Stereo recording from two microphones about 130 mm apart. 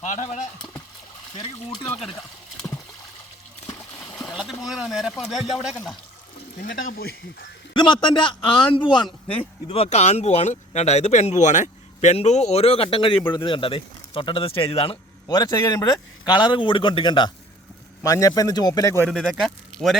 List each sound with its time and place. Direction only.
0.0 s speech: 65° left (ahead or behind)
4.3 s a sound: centre (ahead or behind)
4.6 s speech: 5° right (ahead or behind)
6.6 s speech: 90° left
7.7 s a man's voice: 35° left (ahead or behind)
15.3 s a man's voice: 30° left (ahead or behind)
18.0 s a man's voice: 25° left (ahead or behind)
19.0 s speech: centre (ahead or behind)